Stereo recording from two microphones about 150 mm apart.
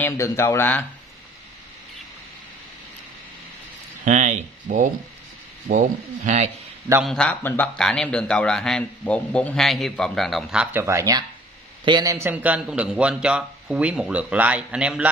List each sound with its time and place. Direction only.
0.0 s speech: 20° left (ahead or behind)
4.0 s speech: 55° right (ahead or behind)
7.0 s a man's voice: 5° left (ahead or behind)